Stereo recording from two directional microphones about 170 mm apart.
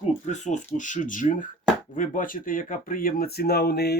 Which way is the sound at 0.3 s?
45° left (ahead or behind).